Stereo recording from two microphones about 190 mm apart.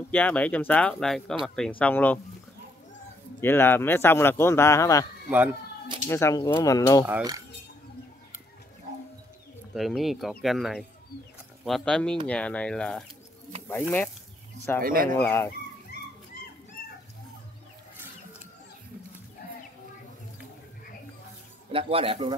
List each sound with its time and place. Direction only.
0.1 s speech: 5° left (ahead or behind)
3.3 s speech: 10° left (ahead or behind)
6.0 s speech: 15° left (ahead or behind)
7.1 s a sound: 15° right (ahead or behind)
9.8 s speech: centre (ahead or behind)
14.8 s speech: 50° right (ahead or behind)
15.1 s speech: 10° left (ahead or behind)
21.7 s speech: 30° right (ahead or behind)